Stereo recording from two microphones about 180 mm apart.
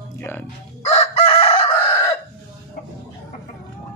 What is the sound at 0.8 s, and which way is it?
Chicken, 35° left (ahead or behind).